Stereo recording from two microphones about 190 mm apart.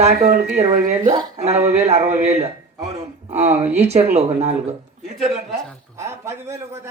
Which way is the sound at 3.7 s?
35° right (ahead or behind).